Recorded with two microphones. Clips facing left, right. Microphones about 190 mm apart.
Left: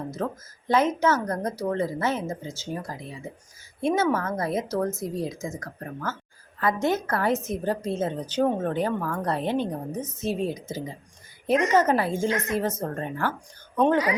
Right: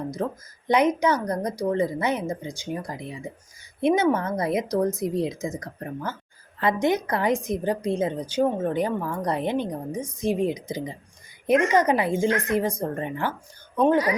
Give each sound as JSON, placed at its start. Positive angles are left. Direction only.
{"t": 0.7, "sound": "a woman's voice", "side_deg": -15}